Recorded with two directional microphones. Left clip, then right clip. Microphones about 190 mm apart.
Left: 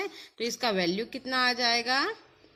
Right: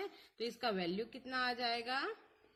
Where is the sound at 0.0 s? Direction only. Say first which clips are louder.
Left 10 dB; 35° left (ahead or behind).